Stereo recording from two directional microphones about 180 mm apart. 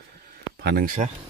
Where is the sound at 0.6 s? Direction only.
60° right (ahead or behind).